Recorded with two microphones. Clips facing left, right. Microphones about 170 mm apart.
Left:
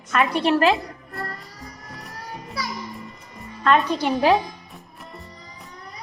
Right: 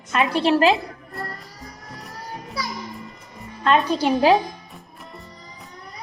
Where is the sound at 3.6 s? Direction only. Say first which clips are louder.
Right 1 dB; 25° right (ahead or behind).